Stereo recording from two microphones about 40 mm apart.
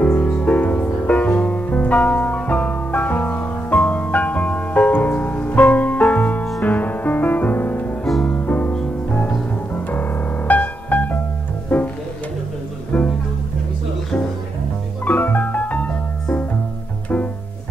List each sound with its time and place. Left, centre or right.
0.0 s music: left
12.9 s music: left
15.0 s music: left